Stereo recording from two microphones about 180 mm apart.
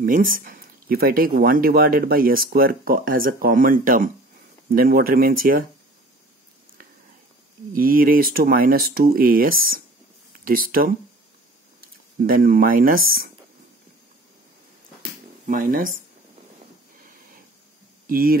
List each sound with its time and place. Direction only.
0.0 s speech: 50° right (ahead or behind)
7.7 s speech: 50° right (ahead or behind)
12.2 s speech: 55° right (ahead or behind)
15.4 s speech: 45° right (ahead or behind)
18.0 s speech: 55° right (ahead or behind)